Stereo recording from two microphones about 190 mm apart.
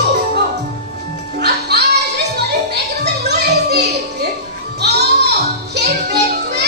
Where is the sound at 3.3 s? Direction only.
60° right (ahead or behind).